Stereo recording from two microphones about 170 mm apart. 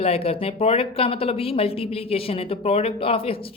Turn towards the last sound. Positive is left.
turn(degrees=35)  # may be behind; listen again after turning